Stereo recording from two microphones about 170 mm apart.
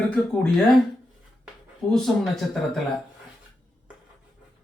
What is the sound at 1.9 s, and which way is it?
Speech, centre (ahead or behind).